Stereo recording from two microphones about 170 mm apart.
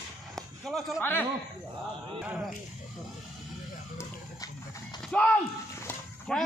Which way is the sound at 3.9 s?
20° left (ahead or behind).